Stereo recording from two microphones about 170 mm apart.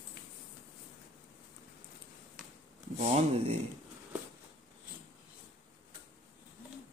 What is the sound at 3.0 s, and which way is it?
Speech, 40° right (ahead or behind).